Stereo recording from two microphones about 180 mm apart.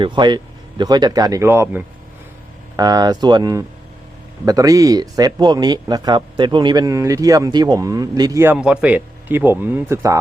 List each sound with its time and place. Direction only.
0.0 s a man's voice: 25° right (ahead or behind)
8.5 s speech: 5° right (ahead or behind)